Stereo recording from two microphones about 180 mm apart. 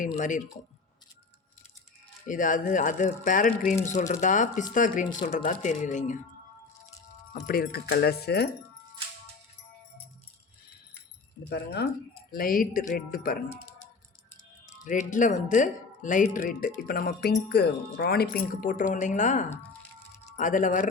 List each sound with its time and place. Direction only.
0.0 s speech: 45° left (ahead or behind)
2.2 s speech: 45° left (ahead or behind)
7.4 s speech: 55° left (ahead or behind)
11.4 s speech: 65° left (ahead or behind)
12.3 s speech: 50° left (ahead or behind)
14.8 s speech: 45° left (ahead or behind)